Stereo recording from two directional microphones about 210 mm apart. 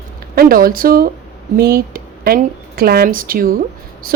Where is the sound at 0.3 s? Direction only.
45° right (ahead or behind).